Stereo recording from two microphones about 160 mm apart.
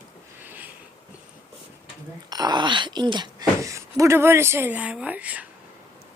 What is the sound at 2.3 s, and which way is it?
Speech, 25° right (ahead or behind).